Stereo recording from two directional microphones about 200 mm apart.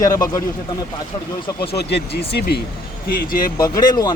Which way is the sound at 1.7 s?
55° left (ahead or behind).